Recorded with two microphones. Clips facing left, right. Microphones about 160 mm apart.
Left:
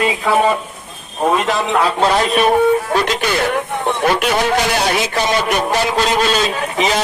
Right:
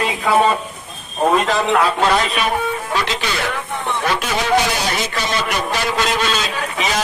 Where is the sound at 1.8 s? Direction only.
30° left (ahead or behind).